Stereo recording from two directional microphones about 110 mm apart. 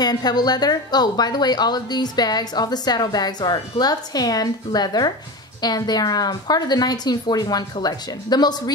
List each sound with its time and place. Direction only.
0.0 s speech: 40° left (ahead or behind)